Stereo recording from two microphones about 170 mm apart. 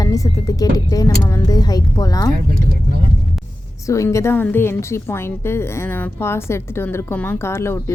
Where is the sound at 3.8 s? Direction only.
20° left (ahead or behind).